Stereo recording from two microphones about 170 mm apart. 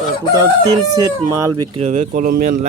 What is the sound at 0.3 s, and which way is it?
Speech, 20° right (ahead or behind).